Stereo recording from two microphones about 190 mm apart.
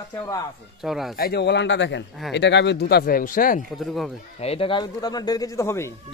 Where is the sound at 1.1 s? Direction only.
55° left (ahead or behind).